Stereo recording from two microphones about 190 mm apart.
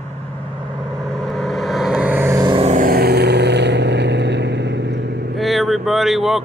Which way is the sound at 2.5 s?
35° right (ahead or behind).